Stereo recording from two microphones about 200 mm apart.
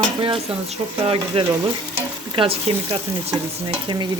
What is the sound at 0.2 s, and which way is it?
Speech, 25° right (ahead or behind).